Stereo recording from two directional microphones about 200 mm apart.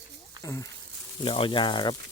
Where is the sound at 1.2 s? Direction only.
25° left (ahead or behind).